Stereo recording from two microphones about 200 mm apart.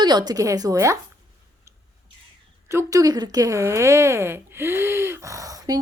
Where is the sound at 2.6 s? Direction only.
15° right (ahead or behind).